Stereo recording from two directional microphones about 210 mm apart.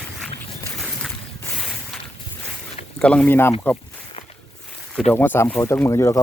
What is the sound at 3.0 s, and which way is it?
Speech, 5° left (ahead or behind).